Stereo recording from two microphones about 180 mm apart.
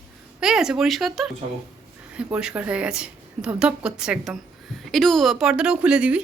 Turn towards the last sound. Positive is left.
turn(degrees=-5)  # may be behind; listen again after turning